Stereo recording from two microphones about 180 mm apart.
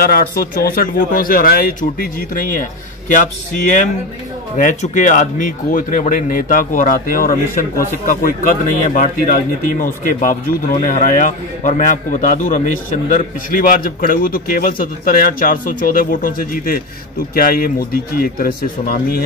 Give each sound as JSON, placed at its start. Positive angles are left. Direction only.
{"t": 0.0, "sound": "speech", "side_deg": 55}
{"t": 4.6, "sound": "a man's voice", "side_deg": 45}